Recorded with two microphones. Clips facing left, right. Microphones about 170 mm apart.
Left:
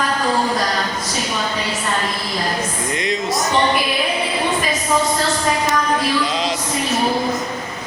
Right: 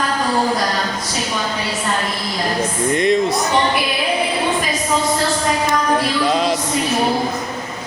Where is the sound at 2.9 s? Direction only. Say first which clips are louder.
Right 8 dB; 55° right (ahead or behind).